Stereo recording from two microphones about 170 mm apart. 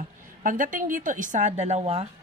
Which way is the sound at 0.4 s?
50° right (ahead or behind).